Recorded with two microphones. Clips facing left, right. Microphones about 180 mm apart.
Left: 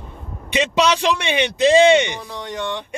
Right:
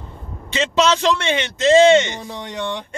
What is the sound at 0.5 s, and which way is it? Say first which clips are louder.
Speech: even; 15° left (ahead or behind).